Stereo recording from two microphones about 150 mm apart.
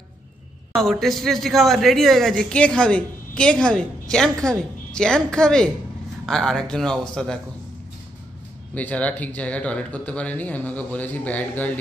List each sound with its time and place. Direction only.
0.7 s a man's voice: centre (ahead or behind)
8.7 s speech: 10° left (ahead or behind)